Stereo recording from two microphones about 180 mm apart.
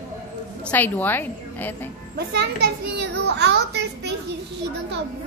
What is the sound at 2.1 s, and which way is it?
A child's voice, 65° right (ahead or behind).